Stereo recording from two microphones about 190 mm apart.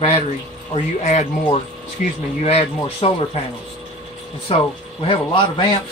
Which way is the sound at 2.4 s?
35° left (ahead or behind).